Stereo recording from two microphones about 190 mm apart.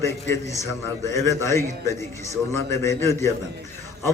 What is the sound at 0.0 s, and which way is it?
A woman's voice, 15° left (ahead or behind).